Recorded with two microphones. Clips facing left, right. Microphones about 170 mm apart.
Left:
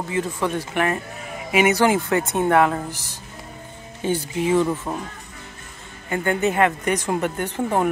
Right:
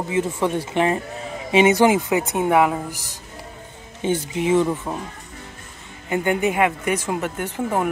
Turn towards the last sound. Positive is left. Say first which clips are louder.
# left 1 dB
turn(degrees=-5)  # may be behind; listen again after turning